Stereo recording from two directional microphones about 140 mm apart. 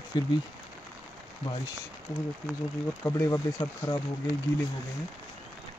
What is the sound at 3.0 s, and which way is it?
Speech, 15° left (ahead or behind).